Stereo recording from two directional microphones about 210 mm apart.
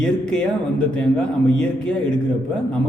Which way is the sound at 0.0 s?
5° left (ahead or behind).